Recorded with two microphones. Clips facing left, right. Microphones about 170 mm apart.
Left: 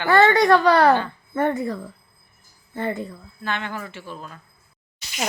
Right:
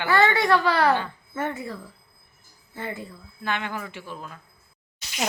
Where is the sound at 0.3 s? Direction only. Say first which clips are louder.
Left 6 dB; 40° left (ahead or behind).